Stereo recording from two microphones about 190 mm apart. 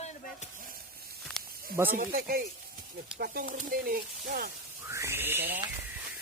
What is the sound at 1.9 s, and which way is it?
Speech, 50° right (ahead or behind).